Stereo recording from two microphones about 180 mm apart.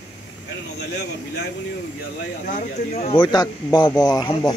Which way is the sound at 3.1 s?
25° left (ahead or behind).